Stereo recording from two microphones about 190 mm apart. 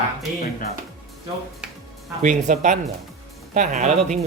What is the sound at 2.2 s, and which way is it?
Speech, 40° right (ahead or behind).